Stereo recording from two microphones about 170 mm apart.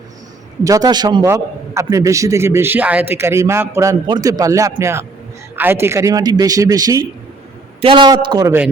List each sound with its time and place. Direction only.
0.6 s a man's voice: 20° right (ahead or behind)